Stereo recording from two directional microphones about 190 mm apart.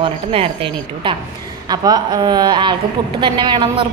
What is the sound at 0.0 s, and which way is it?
Speech, 30° right (ahead or behind).